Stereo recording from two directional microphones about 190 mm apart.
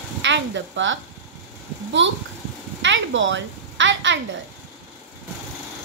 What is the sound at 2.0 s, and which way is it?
A woman's voice, 75° right (ahead or behind).